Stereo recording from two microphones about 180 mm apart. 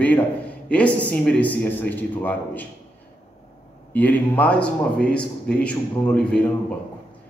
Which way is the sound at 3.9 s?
10° left (ahead or behind).